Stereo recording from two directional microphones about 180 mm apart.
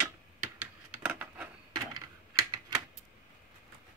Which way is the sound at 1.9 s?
20° right (ahead or behind).